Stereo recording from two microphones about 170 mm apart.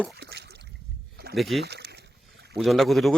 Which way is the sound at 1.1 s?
65° right (ahead or behind).